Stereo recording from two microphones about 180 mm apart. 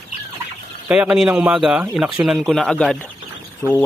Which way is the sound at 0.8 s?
5° right (ahead or behind).